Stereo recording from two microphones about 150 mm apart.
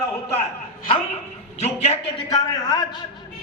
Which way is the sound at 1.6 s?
45° left (ahead or behind).